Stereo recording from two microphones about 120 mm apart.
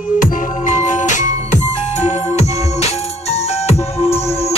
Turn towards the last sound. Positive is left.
turn(degrees=60)  # may be behind; listen again after turning